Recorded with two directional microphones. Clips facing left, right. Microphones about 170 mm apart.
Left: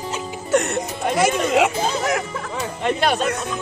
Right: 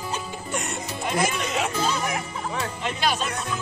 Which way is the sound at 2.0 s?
80° left.